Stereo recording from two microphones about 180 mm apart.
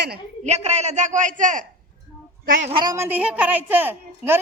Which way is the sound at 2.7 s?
20° right (ahead or behind).